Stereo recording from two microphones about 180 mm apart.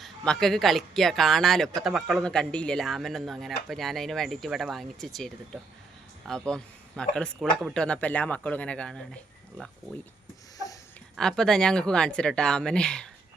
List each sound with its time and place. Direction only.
0.0 s speech: centre (ahead or behind)
6.5 s a man's voice: 5° left (ahead or behind)
11.2 s speech: 5° left (ahead or behind)